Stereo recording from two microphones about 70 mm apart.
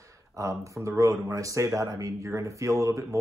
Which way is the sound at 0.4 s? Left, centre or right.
Right.